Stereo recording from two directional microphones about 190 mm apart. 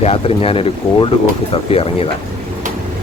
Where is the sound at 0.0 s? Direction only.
30° left (ahead or behind).